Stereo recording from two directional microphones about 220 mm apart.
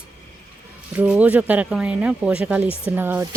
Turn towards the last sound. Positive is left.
turn(degrees=-10)  # may be behind; listen again after turning